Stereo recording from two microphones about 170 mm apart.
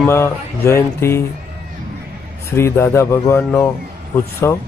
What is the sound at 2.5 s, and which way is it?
Speech, 15° left (ahead or behind).